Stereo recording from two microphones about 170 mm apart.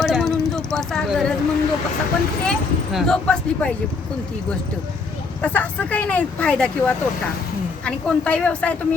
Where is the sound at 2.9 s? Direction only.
5° left (ahead or behind).